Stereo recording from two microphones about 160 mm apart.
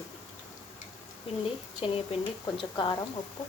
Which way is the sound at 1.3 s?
35° left (ahead or behind).